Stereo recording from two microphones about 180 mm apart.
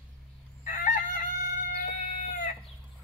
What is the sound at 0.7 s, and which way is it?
Crowing, 50° left (ahead or behind).